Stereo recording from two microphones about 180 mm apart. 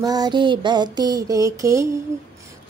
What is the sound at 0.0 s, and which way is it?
Female singing, 20° right (ahead or behind).